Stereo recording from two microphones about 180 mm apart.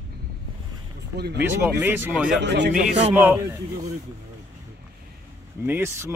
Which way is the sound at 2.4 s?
70° right (ahead or behind).